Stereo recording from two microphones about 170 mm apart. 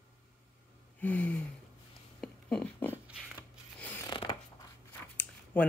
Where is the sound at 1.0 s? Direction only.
10° left (ahead or behind).